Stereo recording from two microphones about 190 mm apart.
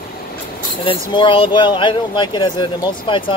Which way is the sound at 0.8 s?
25° left (ahead or behind).